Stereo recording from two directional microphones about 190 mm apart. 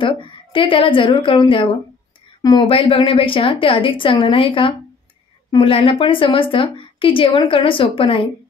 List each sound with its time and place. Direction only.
0.0 s a woman's voice: 25° left (ahead or behind)